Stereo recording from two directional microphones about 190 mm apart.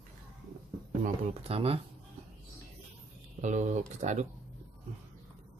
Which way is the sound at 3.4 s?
40° right (ahead or behind).